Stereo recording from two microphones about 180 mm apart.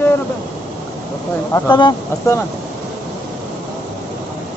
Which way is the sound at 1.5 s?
25° left (ahead or behind).